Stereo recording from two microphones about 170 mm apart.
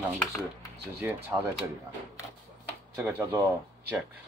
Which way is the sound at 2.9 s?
15° right (ahead or behind).